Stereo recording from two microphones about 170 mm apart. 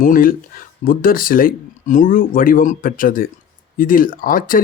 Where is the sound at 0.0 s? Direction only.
55° left (ahead or behind).